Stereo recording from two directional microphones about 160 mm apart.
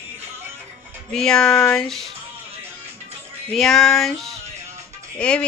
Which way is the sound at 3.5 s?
Centre (ahead or behind).